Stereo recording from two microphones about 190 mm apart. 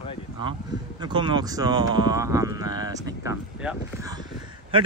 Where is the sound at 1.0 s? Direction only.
25° right (ahead or behind).